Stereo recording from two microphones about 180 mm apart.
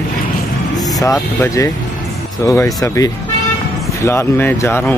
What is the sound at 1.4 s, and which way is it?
Speech, 15° left (ahead or behind).